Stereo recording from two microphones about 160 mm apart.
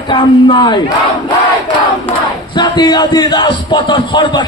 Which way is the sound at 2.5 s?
25° left (ahead or behind).